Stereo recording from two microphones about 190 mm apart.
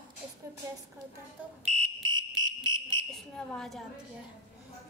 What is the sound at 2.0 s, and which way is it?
Fire alarm, 20° right (ahead or behind).